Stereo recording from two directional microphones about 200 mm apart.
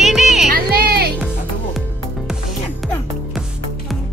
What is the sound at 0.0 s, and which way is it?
Music, centre (ahead or behind).